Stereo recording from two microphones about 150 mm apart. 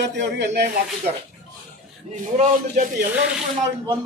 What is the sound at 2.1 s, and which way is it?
Speech, 55° right (ahead or behind).